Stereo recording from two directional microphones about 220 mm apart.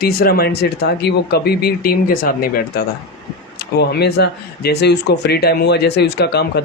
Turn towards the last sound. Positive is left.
turn(degrees=50)  # may be behind; listen again after turning